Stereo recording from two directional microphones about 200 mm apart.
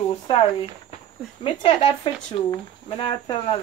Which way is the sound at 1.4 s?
25° left (ahead or behind).